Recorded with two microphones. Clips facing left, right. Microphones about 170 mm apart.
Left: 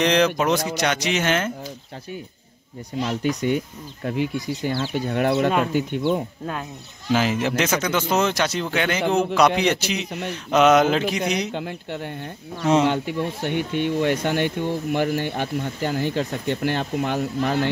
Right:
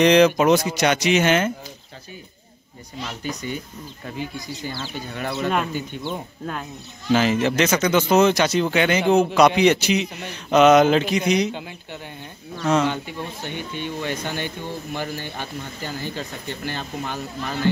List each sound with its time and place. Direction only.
0.0 s speech: 5° right (ahead or behind)
3.2 s speech: 70° left (ahead or behind)
7.1 s speech: 5° left (ahead or behind)
11.5 s speech: 60° left (ahead or behind)